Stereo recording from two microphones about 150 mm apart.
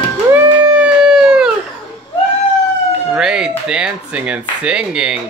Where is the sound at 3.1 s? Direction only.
5° right (ahead or behind).